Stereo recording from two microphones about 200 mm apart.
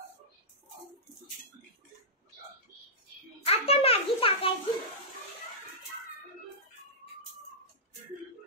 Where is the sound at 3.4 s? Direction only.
30° left (ahead or behind).